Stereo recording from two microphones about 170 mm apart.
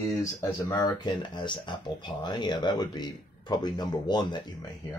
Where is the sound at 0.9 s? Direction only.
25° left (ahead or behind).